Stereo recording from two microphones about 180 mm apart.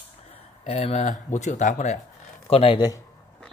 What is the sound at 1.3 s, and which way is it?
Speech, 40° left (ahead or behind).